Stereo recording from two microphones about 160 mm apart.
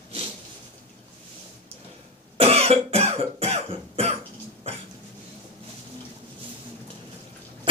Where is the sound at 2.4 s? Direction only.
40° right (ahead or behind).